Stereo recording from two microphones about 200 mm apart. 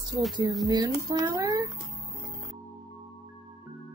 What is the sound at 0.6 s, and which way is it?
Speech, 20° right (ahead or behind).